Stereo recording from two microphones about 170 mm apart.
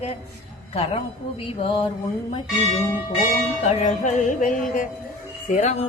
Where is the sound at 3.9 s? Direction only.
45° left (ahead or behind).